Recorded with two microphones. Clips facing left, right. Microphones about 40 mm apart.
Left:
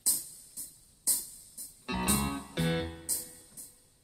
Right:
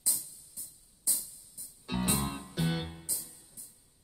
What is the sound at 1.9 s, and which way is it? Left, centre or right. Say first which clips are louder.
Music: left 1 dB; left.